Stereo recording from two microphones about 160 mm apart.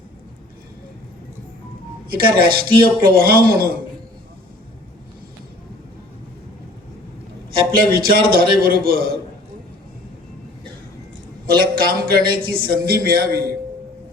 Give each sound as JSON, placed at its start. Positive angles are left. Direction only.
{"t": 2.0, "sound": "a man's voice", "side_deg": -65}
{"t": 7.8, "sound": "a man's voice", "side_deg": -65}
{"t": 11.5, "sound": "a man's voice", "side_deg": -70}